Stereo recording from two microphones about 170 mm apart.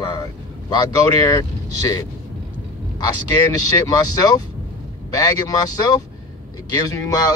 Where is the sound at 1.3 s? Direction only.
25° left (ahead or behind).